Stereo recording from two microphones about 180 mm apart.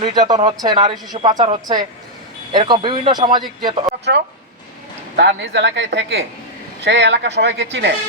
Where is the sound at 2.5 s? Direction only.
25° right (ahead or behind).